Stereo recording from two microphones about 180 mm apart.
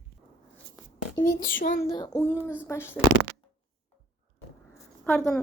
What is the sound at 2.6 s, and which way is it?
Speech, 15° left (ahead or behind).